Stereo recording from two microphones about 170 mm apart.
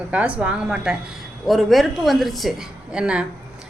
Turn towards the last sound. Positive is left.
turn(degrees=-5)  # may be behind; listen again after turning